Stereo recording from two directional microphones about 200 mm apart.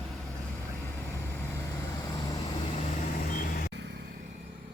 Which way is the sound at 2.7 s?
45° left (ahead or behind).